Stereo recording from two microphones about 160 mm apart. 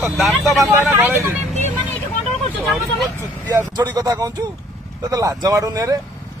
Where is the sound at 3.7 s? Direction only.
25° right (ahead or behind).